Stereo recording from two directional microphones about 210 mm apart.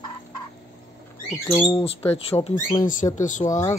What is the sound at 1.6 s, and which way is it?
Speech, 25° left (ahead or behind).